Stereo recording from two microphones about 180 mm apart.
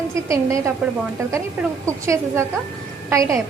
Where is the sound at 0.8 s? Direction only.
5° right (ahead or behind).